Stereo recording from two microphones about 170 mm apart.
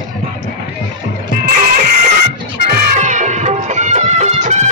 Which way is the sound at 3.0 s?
45° right (ahead or behind).